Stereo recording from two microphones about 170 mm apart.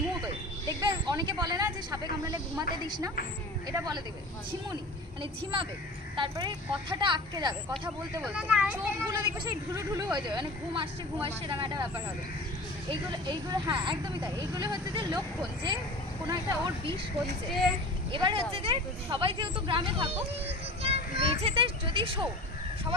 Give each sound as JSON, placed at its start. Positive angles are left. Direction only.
{"t": 0.7, "sound": "speech", "side_deg": -25}
{"t": 3.7, "sound": "speech", "side_deg": -25}
{"t": 5.2, "sound": "speech", "side_deg": -30}
{"t": 8.2, "sound": "speech", "side_deg": -5}
{"t": 9.0, "sound": "speech", "side_deg": -20}
{"t": 13.1, "sound": "speech", "side_deg": -25}
{"t": 18.1, "sound": "a child's voice", "side_deg": -30}